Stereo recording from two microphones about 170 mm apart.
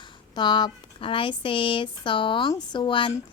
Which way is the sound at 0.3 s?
25° left (ahead or behind).